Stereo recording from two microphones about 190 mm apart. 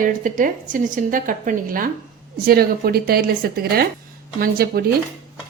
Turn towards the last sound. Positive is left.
turn(degrees=-50)  # may be behind; listen again after turning